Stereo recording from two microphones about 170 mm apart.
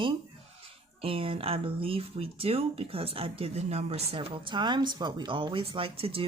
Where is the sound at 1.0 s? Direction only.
30° right (ahead or behind).